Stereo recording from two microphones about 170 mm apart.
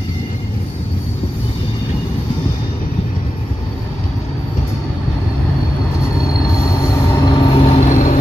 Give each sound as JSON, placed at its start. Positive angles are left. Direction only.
{"t": 6.9, "sound": "train", "side_deg": 20}
{"t": 7.8, "sound": "vehicle", "side_deg": 50}